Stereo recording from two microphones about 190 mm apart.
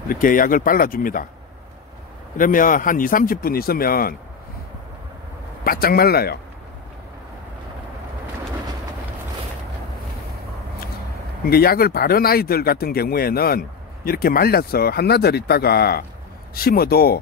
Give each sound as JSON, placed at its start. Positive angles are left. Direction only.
{"t": 0.1, "sound": "speech", "side_deg": 45}
{"t": 2.3, "sound": "speech", "side_deg": 45}
{"t": 5.6, "sound": "speech", "side_deg": 50}
{"t": 11.4, "sound": "speech", "side_deg": 55}